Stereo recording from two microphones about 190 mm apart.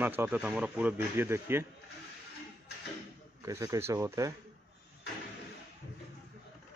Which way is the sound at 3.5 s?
15° right (ahead or behind).